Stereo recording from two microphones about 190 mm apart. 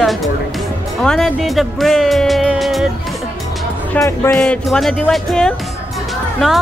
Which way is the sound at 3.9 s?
15° left (ahead or behind).